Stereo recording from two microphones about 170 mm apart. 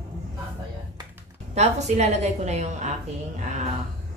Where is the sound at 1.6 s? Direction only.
40° right (ahead or behind).